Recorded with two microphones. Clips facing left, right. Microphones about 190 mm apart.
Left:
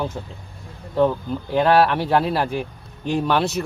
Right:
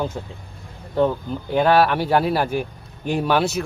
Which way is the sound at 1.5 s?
Centre (ahead or behind).